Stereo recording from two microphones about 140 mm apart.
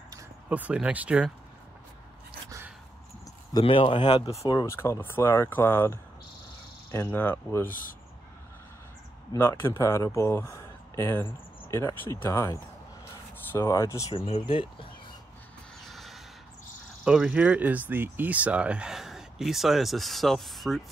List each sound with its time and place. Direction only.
0.5 s speech: 10° right (ahead or behind)
3.5 s speech: 40° left (ahead or behind)
4.6 s speech: 20° left (ahead or behind)
9.4 s speech: 15° left (ahead or behind)
14.1 s speech: 40° left (ahead or behind)
15.8 s a sound: centre (ahead or behind)
17.0 s speech: 5° right (ahead or behind)